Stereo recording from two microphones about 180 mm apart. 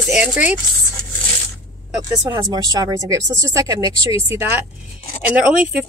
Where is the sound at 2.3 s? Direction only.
25° right (ahead or behind); by 5.8 s 5° right (ahead or behind).